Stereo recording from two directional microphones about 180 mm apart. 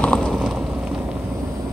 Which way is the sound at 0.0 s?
5° left (ahead or behind).